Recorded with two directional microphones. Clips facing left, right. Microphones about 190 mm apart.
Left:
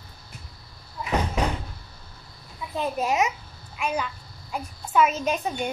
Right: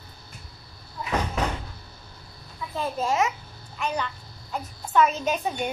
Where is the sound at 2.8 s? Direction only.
15° left (ahead or behind).